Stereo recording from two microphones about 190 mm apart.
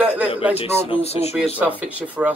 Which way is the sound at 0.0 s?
10° right (ahead or behind).